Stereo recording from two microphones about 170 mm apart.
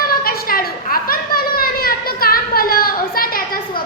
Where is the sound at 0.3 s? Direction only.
60° left (ahead or behind).